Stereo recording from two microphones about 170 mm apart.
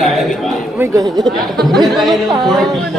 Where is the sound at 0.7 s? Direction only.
20° right (ahead or behind).